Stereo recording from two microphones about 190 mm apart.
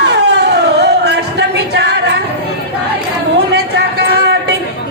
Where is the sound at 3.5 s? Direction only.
60° right (ahead or behind).